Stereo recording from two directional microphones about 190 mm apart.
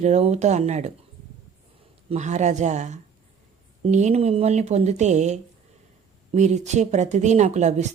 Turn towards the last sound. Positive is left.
turn(degrees=-35)  # may be behind; listen again after turning